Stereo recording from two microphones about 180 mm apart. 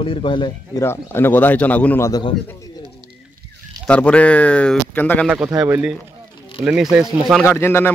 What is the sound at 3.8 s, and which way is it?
A man's voice, 5° left (ahead or behind).